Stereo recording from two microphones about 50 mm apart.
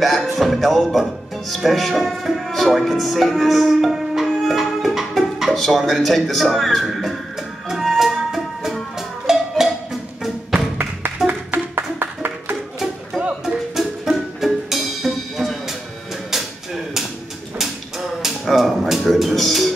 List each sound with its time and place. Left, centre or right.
0.0 s speech: centre
7.6 s music: centre
11.7 s music: right
13.7 s music: centre
16.3 s a sound: centre
18.5 s music: centre